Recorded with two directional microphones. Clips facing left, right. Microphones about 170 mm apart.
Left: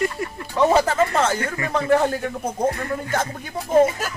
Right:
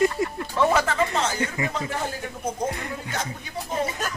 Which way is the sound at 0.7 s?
40° left (ahead or behind).